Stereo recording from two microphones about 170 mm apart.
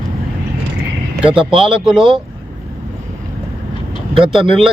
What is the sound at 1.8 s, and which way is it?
Speech, 5° right (ahead or behind).